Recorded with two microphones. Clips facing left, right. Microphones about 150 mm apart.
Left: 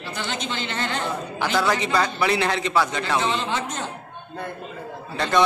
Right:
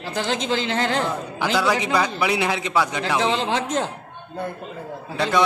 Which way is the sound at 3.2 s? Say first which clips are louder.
Right 3 dB; 90° right.